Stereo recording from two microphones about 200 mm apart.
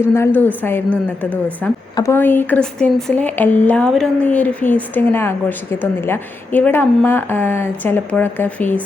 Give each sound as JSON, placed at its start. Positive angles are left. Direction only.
{"t": 0.0, "sound": "speech", "side_deg": 10}